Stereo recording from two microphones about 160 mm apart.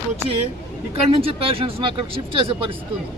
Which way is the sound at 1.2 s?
35° right (ahead or behind).